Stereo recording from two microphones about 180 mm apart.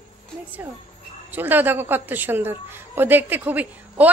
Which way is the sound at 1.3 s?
10° right (ahead or behind).